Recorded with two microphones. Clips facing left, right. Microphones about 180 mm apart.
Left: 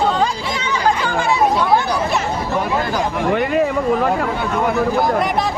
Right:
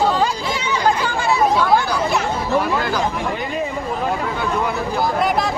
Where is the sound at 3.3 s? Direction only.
55° left (ahead or behind).